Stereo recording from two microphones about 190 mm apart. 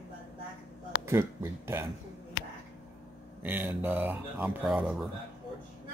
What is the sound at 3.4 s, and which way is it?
Speech, 10° right (ahead or behind).